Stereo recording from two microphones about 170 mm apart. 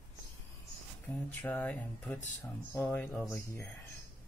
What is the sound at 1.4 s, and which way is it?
Speech, 10° left (ahead or behind).